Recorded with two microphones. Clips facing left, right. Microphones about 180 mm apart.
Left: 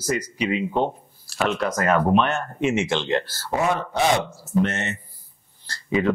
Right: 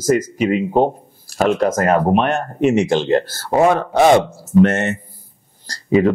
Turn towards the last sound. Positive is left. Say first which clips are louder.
# right 8 dB
turn(degrees=-40)  # may be behind; listen again after turning